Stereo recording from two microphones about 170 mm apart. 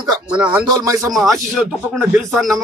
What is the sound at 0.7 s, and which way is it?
Speech, 20° right (ahead or behind).